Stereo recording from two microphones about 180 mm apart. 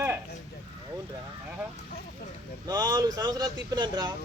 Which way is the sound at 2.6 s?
20° right (ahead or behind).